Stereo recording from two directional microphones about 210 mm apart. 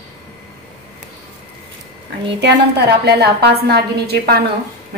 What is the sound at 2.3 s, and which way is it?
A woman's voice, 55° right (ahead or behind).